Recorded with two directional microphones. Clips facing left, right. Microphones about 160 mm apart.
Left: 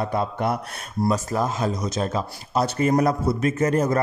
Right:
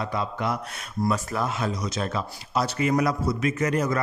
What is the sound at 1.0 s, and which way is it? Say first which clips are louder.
A man's voice: left 3 dB; 40° left (ahead or behind).